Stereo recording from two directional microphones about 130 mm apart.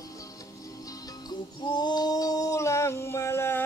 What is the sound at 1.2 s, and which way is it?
Singing, 35° left (ahead or behind).